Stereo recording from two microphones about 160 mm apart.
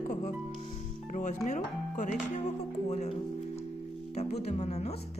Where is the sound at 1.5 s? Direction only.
45° left (ahead or behind).